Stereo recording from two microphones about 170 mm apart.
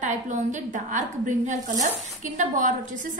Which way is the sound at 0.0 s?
45° right (ahead or behind).